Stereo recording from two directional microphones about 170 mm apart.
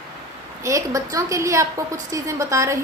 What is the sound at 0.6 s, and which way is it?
A woman's voice, 20° right (ahead or behind).